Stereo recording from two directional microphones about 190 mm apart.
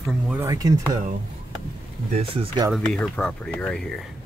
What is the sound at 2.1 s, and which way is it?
Speech, 30° right (ahead or behind).